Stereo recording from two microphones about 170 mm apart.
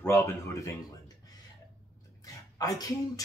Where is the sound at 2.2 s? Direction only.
20° left (ahead or behind).